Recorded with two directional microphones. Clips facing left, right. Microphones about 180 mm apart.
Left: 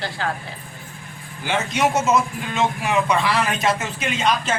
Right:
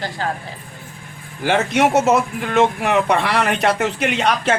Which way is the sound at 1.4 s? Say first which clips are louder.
Right 5 dB; 65° right (ahead or behind).